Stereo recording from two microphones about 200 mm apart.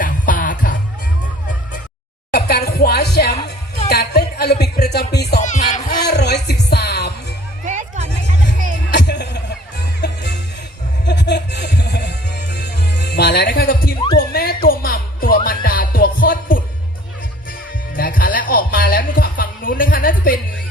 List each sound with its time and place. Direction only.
0.0 s music: 40° left (ahead or behind)
2.3 s speech: 55° left (ahead or behind)
3.8 s music: 55° left (ahead or behind)
5.4 s music: 35° left (ahead or behind)
6.1 s music: 55° left (ahead or behind)
7.6 s hubbub: 40° right (ahead or behind)
8.9 s music: 55° left (ahead or behind)
11.0 s music: 60° left (ahead or behind)
17.9 s music: 45° left (ahead or behind)